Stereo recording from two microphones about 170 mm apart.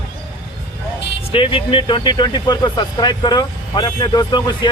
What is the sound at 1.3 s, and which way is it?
Speech, 30° left (ahead or behind).